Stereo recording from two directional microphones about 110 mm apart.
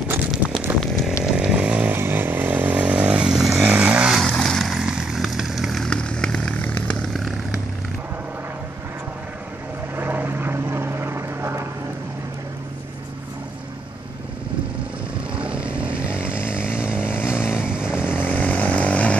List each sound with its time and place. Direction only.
0.3 s a sound: 10° right (ahead or behind)
1.2 s chainsaw: 5° right (ahead or behind)
4.2 s vehicle: centre (ahead or behind)
9.9 s vehicle: 15° right (ahead or behind)
15.3 s vehicle: 10° right (ahead or behind)
16.4 s chainsaw: 10° right (ahead or behind)
17.1 s vehicle: 10° right (ahead or behind)
18.2 s chainsaw: 15° left (ahead or behind)